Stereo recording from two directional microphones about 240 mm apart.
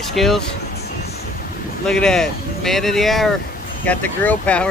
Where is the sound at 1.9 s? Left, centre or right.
Centre.